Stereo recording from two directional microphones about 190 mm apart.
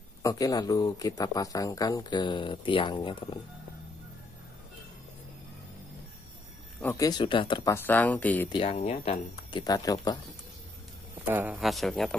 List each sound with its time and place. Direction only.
0.2 s speech: 20° left (ahead or behind)
6.8 s speech: 15° left (ahead or behind)
7.7 s speech: 10° left (ahead or behind)
8.5 s speech: 30° left (ahead or behind)
11.2 s speech: 10° right (ahead or behind)